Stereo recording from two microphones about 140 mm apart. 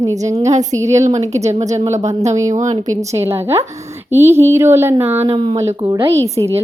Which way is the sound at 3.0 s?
20° right (ahead or behind).